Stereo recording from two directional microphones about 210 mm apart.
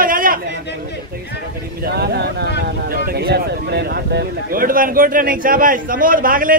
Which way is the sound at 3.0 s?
50° right (ahead or behind).